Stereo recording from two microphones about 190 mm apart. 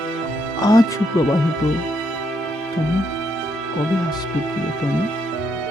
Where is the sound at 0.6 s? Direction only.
20° left (ahead or behind).